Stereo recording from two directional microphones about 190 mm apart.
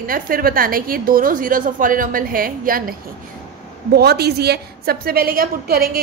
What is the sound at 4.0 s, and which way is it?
A woman's voice, 55° right (ahead or behind).